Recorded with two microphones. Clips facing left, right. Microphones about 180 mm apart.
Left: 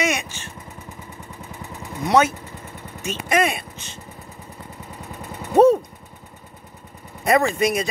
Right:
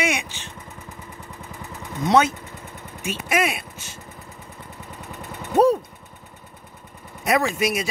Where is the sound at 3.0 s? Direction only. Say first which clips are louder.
Left 2 dB; 10° right (ahead or behind).